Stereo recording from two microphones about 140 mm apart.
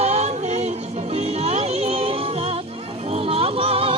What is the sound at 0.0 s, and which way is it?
Music, 45° right (ahead or behind).